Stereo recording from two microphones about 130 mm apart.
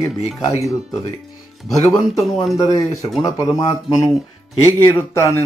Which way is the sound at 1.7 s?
Centre (ahead or behind).